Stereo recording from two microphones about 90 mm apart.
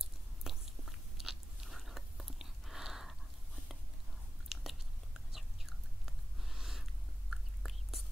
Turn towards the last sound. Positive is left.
turn(degrees=0)  # may be behind; listen again after turning